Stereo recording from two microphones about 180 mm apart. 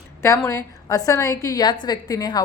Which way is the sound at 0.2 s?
15° left (ahead or behind).